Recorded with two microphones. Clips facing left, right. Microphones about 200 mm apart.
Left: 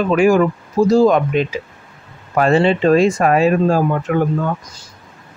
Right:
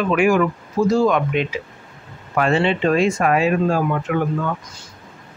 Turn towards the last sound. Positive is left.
turn(degrees=40)  # may be behind; listen again after turning